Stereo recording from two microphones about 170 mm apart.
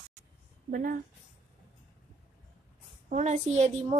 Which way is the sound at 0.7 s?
50° right (ahead or behind).